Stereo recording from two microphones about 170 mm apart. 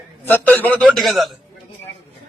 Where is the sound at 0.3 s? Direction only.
10° left (ahead or behind).